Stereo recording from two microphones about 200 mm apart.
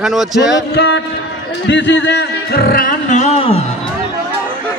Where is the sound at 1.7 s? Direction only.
60° left (ahead or behind); by 3.6 s 30° left (ahead or behind).